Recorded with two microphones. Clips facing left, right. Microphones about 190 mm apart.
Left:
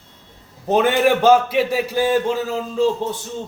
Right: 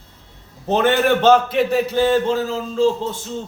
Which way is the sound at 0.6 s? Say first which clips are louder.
Left 1 dB; 10° left (ahead or behind).